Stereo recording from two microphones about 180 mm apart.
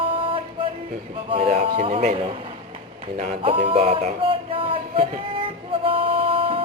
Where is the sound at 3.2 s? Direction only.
35° right (ahead or behind).